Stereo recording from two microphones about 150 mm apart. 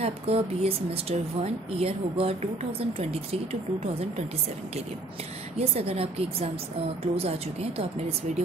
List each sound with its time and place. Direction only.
0.0 s a woman's voice: 40° right (ahead or behind)
5.6 s a woman's voice: 40° right (ahead or behind)